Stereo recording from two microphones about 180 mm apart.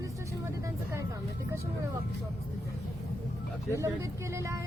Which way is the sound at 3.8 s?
15° right (ahead or behind).